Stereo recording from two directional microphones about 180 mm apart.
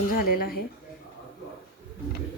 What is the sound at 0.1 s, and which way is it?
Speech, 55° left (ahead or behind).